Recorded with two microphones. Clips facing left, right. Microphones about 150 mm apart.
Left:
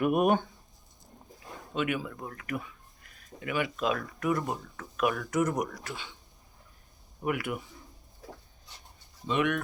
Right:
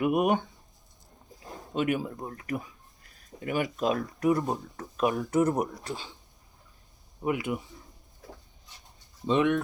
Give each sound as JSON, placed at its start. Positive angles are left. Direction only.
{"t": 0.0, "sound": "speech", "side_deg": -15}
{"t": 1.5, "sound": "speech", "side_deg": -35}
{"t": 7.3, "sound": "speech", "side_deg": -20}
{"t": 9.2, "sound": "speech", "side_deg": -25}